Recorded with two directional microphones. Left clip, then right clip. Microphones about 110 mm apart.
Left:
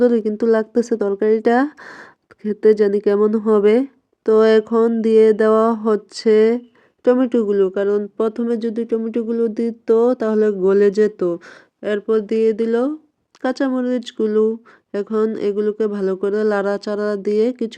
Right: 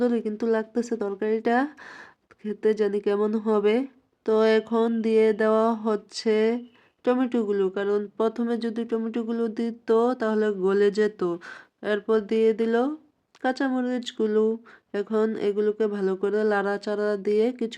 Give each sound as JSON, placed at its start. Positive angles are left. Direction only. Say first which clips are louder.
{"t": 0.0, "sound": "speech", "louder": "left 9 dB", "side_deg": 35}
{"t": 13.4, "sound": "speech", "louder": "left 6 dB", "side_deg": 35}